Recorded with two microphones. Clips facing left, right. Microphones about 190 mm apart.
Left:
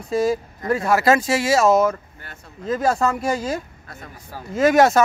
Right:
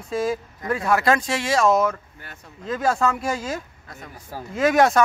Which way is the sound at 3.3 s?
40° left (ahead or behind).